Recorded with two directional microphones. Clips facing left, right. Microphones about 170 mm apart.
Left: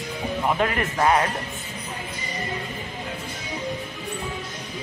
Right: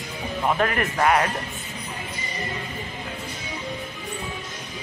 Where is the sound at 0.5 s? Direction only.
20° left (ahead or behind).